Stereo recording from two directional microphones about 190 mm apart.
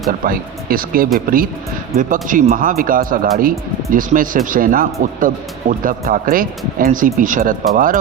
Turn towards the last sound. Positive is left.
turn(degrees=-45)  # may be behind; listen again after turning